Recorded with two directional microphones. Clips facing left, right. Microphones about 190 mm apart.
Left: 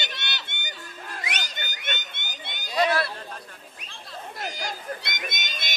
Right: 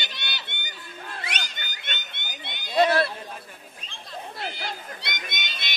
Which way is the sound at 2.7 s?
25° right (ahead or behind).